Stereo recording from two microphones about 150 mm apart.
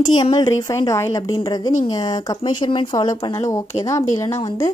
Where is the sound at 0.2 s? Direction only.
30° left (ahead or behind).